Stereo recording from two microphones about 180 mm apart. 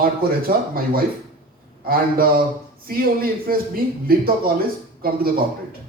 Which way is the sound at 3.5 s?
55° right (ahead or behind).